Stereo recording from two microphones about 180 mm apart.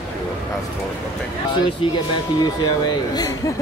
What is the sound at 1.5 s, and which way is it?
Speech, 25° left (ahead or behind).